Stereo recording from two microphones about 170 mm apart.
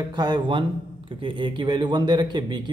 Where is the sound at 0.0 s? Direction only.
25° right (ahead or behind).